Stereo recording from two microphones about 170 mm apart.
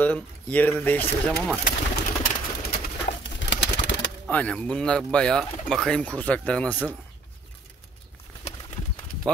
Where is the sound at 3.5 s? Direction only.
90° left.